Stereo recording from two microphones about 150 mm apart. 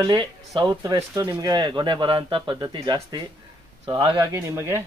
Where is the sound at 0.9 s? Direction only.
20° right (ahead or behind).